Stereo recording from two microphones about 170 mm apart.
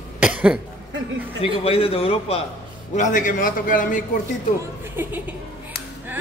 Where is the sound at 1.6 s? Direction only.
35° left (ahead or behind).